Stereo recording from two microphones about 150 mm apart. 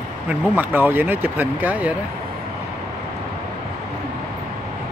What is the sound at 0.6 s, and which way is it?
Speech, 15° right (ahead or behind).